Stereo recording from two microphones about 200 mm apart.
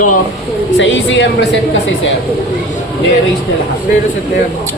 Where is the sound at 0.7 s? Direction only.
70° left (ahead or behind).